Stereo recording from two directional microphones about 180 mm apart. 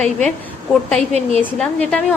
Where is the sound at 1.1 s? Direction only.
35° right (ahead or behind).